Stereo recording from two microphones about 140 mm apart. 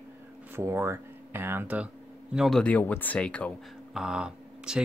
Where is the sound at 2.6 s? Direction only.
15° left (ahead or behind).